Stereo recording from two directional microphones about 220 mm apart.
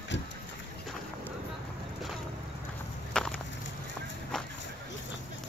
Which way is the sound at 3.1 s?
5° left (ahead or behind).